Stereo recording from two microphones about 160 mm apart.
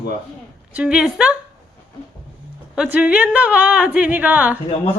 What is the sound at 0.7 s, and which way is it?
Speech, 5° right (ahead or behind).